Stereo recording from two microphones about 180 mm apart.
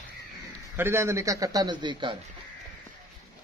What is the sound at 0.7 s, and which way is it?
A man's voice, 15° right (ahead or behind).